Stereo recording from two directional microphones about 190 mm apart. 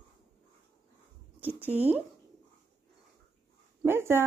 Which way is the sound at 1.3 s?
10° right (ahead or behind).